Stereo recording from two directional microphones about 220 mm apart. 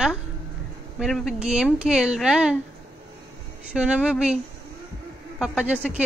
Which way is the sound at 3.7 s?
5° right (ahead or behind).